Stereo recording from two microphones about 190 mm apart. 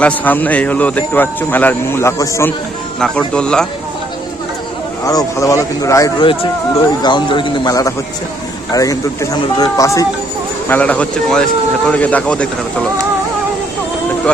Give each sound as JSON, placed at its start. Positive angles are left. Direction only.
{"t": 0.0, "sound": "speech", "side_deg": 10}
{"t": 5.0, "sound": "speech", "side_deg": 15}